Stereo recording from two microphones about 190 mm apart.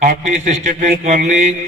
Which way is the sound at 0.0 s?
40° right (ahead or behind).